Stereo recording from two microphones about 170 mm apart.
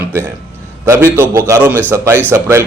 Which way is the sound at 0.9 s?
15° right (ahead or behind).